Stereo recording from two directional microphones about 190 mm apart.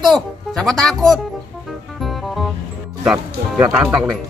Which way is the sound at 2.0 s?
Centre (ahead or behind).